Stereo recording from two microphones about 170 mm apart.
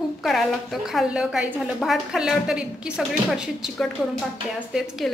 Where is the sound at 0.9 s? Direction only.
5° right (ahead or behind).